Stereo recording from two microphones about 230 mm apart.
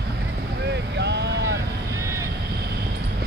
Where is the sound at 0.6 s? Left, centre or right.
Right.